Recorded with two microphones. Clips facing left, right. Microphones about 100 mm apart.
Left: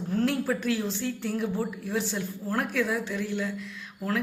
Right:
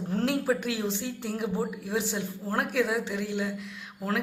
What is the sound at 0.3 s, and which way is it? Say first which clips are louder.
A woman's voice: right 3 dB; 20° right (ahead or behind).